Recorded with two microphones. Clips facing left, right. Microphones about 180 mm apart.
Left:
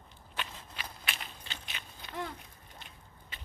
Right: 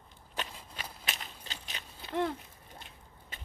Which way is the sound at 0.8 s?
40° right (ahead or behind).